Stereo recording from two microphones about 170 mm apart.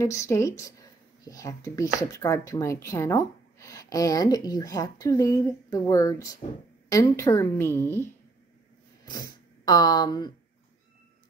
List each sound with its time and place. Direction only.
0.0 s a woman's voice: 15° left (ahead or behind)
9.1 s speech: 20° left (ahead or behind)